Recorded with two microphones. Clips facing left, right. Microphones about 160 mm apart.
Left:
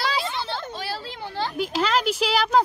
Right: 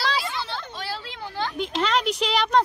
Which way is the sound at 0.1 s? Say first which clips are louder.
Left 1 dB; 25° left (ahead or behind).